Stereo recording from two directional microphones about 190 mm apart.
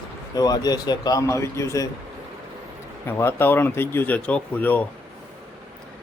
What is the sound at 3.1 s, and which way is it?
Speech, 10° left (ahead or behind).